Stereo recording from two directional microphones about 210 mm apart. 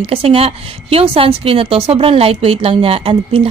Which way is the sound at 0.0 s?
25° right (ahead or behind).